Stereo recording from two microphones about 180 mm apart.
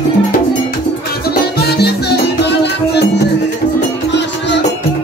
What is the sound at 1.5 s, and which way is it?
Music, 65° left (ahead or behind).